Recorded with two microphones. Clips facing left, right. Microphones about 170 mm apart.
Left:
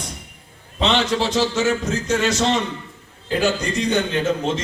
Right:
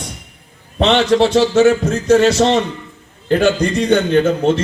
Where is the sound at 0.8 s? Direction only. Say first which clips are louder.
Right 7 dB; 65° right (ahead or behind).